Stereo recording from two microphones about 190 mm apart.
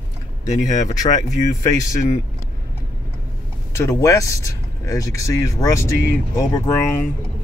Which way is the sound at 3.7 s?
15° left (ahead or behind).